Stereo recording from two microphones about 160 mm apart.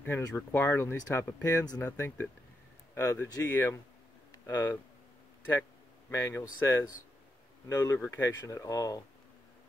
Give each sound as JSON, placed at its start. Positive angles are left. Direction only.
{"t": 0.0, "sound": "speech", "side_deg": 15}
{"t": 4.3, "sound": "a sound", "side_deg": 15}
{"t": 7.6, "sound": "speech", "side_deg": 20}